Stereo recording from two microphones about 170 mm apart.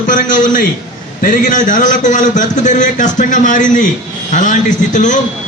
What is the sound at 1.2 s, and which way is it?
A man's voice, 50° left (ahead or behind).